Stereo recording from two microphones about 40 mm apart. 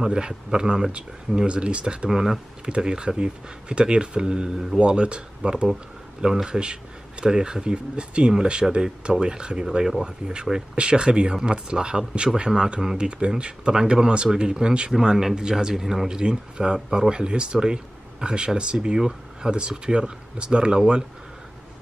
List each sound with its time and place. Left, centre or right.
0.0 s speech: centre
2.0 s speech: centre
2.6 s speech: centre
15.7 s speech: centre